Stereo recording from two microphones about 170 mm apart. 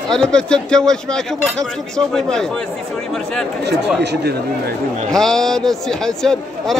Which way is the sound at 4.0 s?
75° right (ahead or behind).